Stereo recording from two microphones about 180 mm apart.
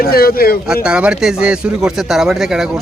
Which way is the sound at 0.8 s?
5° right (ahead or behind).